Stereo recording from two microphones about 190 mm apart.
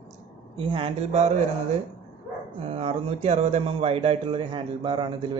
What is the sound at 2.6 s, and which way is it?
Speech, 35° right (ahead or behind).